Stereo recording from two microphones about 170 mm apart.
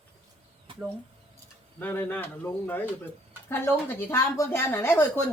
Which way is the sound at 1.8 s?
10° left (ahead or behind).